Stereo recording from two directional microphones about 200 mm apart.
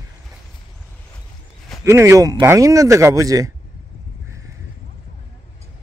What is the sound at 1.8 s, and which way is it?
Speech, 15° right (ahead or behind).